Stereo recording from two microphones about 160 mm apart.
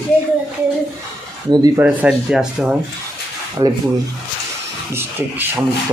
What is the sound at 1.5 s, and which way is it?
Speech, 25° right (ahead or behind).